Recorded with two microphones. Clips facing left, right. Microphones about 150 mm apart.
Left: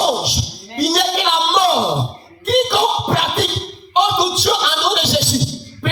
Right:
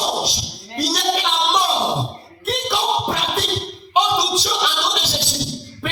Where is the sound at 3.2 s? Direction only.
65° left (ahead or behind).